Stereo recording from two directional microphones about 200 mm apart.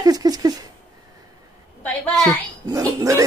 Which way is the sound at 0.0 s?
20° right (ahead or behind).